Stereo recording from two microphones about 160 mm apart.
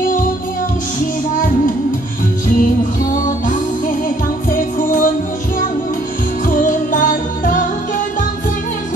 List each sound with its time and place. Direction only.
4.5 s music: 55° left (ahead or behind)
6.5 s music: 55° left (ahead or behind)